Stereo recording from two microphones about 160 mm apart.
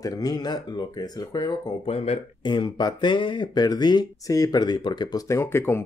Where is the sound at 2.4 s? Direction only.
30° left (ahead or behind).